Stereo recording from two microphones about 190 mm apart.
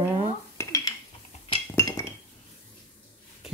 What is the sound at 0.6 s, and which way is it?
Dishes, 20° left (ahead or behind).